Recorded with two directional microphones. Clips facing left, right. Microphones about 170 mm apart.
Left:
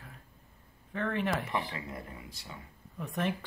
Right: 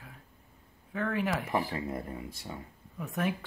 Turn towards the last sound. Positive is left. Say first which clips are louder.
# right 1 dB
turn(degrees=-5)  # may be behind; listen again after turning